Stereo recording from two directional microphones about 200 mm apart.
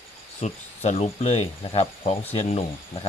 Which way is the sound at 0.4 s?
35° left (ahead or behind).